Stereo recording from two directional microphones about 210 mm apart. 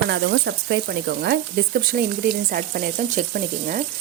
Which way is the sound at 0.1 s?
60° right (ahead or behind).